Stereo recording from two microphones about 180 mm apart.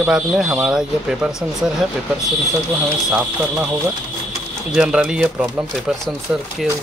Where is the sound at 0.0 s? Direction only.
5° right (ahead or behind).